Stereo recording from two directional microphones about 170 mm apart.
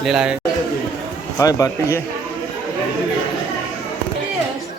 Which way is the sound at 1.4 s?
20° left (ahead or behind).